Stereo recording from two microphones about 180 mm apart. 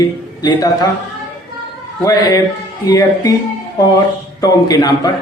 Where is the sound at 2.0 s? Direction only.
20° left (ahead or behind).